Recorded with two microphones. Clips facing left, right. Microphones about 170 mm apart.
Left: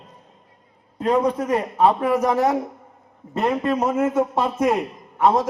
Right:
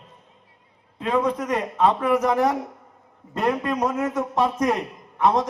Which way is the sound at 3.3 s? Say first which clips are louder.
Left 1 dB; 25° left (ahead or behind).